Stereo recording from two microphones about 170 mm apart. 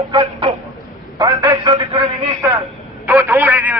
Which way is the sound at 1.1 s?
20° right (ahead or behind).